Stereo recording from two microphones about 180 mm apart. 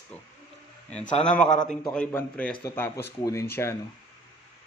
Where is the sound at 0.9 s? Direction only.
40° left (ahead or behind).